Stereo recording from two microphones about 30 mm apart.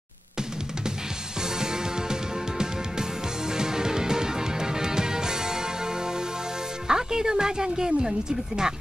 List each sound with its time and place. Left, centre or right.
1.6 s music: right
6.9 s speech: centre